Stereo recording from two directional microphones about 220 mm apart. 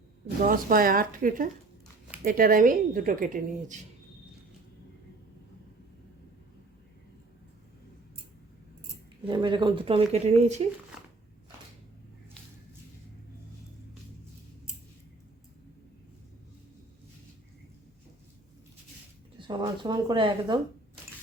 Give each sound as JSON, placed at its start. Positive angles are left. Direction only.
{"t": 0.4, "sound": "speech", "side_deg": -40}
{"t": 9.2, "sound": "speech", "side_deg": -20}
{"t": 19.4, "sound": "speech", "side_deg": -20}